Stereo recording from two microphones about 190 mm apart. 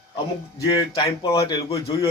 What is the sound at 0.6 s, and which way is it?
Speech, 20° left (ahead or behind).